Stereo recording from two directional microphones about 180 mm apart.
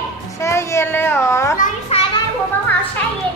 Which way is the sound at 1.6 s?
35° left (ahead or behind).